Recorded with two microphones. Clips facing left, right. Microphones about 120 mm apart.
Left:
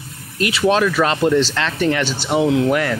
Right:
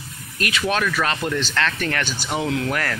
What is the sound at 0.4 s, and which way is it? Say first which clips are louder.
Speech: left 7 dB; 30° left (ahead or behind).